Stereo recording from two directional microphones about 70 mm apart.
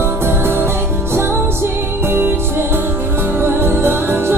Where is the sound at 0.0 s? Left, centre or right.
Right.